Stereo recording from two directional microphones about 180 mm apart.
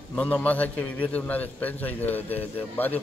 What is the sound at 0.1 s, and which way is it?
A man's voice, 10° left (ahead or behind).